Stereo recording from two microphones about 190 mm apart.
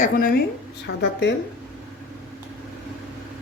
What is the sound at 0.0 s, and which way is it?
Speech, 50° left (ahead or behind).